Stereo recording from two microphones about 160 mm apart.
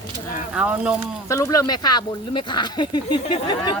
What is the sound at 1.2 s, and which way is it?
Speech, 20° left (ahead or behind).